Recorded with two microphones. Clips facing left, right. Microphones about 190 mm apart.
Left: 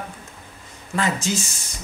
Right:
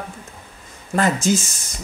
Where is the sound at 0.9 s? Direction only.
45° right (ahead or behind).